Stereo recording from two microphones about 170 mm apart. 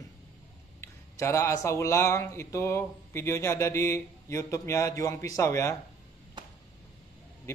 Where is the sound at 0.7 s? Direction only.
15° left (ahead or behind).